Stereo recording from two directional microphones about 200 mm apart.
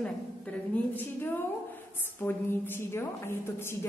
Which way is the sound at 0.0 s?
5° left (ahead or behind).